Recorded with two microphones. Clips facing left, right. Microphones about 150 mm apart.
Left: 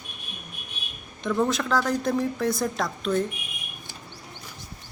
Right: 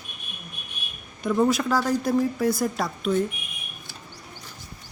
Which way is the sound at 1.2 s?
10° right (ahead or behind).